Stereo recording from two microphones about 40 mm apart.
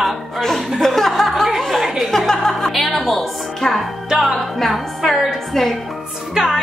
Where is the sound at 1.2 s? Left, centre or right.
Centre.